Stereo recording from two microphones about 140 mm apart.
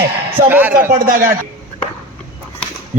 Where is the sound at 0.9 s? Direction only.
80° right.